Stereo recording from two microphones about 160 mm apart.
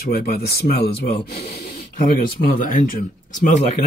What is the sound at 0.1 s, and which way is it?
Speech, 70° left (ahead or behind).